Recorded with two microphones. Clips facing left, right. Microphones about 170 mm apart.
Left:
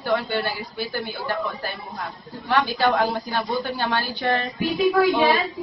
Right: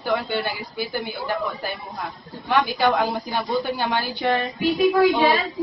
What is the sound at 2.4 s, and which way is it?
A man's voice, 15° right (ahead or behind).